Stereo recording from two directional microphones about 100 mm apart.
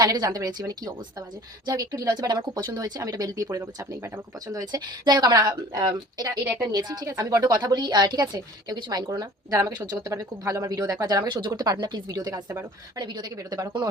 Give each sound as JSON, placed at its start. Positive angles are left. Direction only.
{"t": 0.0, "sound": "speech", "side_deg": -40}
{"t": 2.6, "sound": "a woman's voice", "side_deg": -35}
{"t": 9.0, "sound": "a woman's voice", "side_deg": -30}